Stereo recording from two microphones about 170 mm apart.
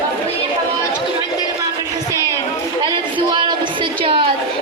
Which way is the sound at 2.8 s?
25° right (ahead or behind).